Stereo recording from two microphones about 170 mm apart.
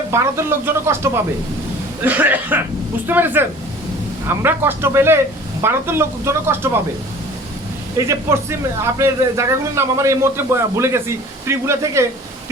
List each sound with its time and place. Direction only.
0.1 s a man's voice: 15° right (ahead or behind)
7.9 s a man's voice: 15° right (ahead or behind)